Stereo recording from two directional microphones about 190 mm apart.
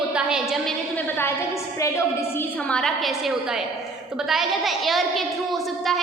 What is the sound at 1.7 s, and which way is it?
A woman's voice, 15° left (ahead or behind).